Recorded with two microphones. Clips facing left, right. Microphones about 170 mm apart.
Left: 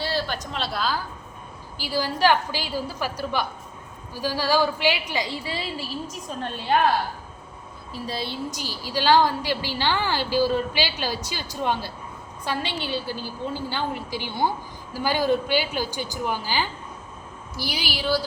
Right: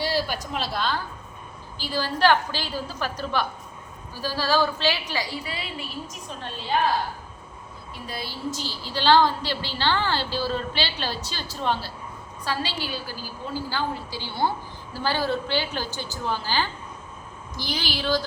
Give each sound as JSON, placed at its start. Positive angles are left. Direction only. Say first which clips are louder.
{"t": 0.0, "sound": "a woman's voice", "louder": "right 1 dB", "side_deg": -10}
{"t": 1.8, "sound": "a woman's voice", "louder": "even", "side_deg": 10}
{"t": 8.0, "sound": "a woman's voice", "louder": "left 2 dB", "side_deg": 25}